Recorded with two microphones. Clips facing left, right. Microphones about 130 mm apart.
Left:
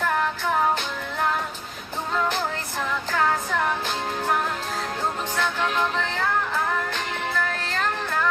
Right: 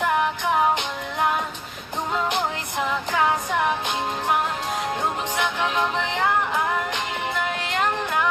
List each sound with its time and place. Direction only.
0.0 s music: 15° right (ahead or behind)
2.1 s music: 20° right (ahead or behind)
5.4 s music: 15° right (ahead or behind)